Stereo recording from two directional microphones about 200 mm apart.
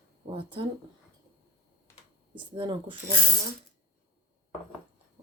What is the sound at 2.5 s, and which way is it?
Speech, 25° right (ahead or behind).